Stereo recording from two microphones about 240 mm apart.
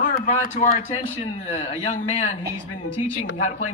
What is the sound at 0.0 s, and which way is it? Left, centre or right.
Speech, left.